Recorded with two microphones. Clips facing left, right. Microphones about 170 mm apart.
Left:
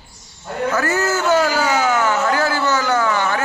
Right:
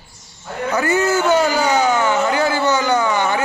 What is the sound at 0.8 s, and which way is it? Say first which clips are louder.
Speech: right 3 dB; centre (ahead or behind).